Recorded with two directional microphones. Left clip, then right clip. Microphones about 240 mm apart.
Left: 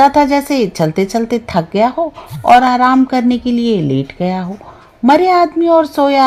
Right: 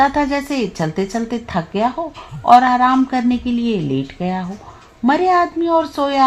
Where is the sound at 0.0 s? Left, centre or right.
Left.